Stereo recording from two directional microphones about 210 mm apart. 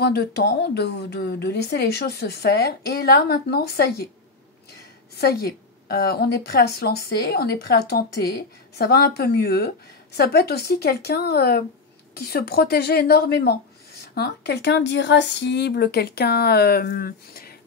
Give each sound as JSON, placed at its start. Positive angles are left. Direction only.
{"t": 0.0, "sound": "a woman's voice", "side_deg": 50}
{"t": 5.1, "sound": "a woman's voice", "side_deg": 50}